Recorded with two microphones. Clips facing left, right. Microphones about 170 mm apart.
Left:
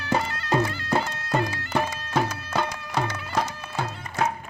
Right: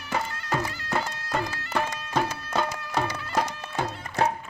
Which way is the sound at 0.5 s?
70° left (ahead or behind).